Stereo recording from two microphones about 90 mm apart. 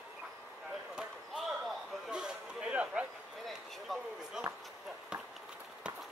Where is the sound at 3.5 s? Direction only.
Centre (ahead or behind).